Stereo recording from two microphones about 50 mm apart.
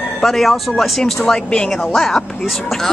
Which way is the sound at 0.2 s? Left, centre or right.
Centre.